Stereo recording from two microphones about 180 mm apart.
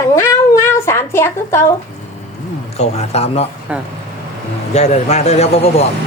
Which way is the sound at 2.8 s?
35° left (ahead or behind).